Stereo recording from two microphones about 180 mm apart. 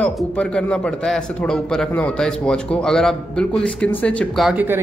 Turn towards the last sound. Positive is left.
turn(degrees=-10)  # may be behind; listen again after turning